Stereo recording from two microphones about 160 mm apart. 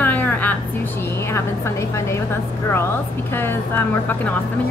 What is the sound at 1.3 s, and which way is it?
Speech, 15° left (ahead or behind).